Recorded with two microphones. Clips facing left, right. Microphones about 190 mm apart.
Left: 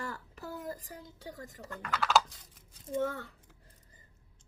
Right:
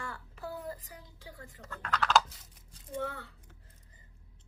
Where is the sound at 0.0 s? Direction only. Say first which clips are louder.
Left 1 dB; 40° left (ahead or behind).